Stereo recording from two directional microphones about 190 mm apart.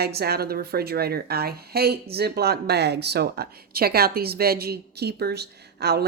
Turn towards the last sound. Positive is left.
turn(degrees=-60)  # may be behind; listen again after turning